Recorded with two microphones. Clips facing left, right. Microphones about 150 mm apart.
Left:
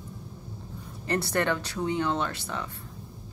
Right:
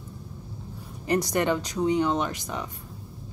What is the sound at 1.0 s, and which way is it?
Speech, 15° right (ahead or behind).